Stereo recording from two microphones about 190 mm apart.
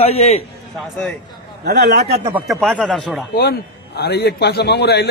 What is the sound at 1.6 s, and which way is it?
Speech, 55° right (ahead or behind).